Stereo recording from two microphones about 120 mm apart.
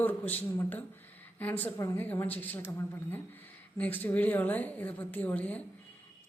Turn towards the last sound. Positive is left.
turn(degrees=10)  # may be behind; listen again after turning